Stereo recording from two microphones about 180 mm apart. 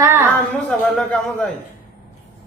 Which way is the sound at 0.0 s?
15° right (ahead or behind).